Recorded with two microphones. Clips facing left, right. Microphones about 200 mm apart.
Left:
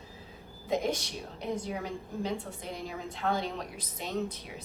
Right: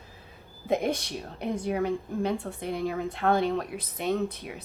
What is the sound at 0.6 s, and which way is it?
A woman's voice, 60° right (ahead or behind).